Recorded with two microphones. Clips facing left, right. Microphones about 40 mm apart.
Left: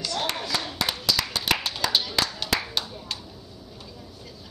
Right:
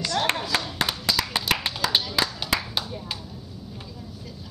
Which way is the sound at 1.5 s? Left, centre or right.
Centre.